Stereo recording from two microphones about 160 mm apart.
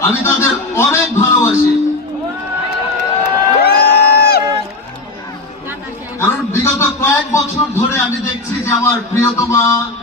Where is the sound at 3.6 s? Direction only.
85° left.